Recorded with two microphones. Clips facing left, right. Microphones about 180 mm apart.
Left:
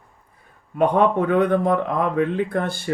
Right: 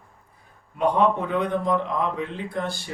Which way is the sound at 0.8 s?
55° left (ahead or behind).